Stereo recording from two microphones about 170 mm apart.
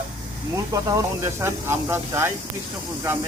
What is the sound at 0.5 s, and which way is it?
Speech, 20° right (ahead or behind).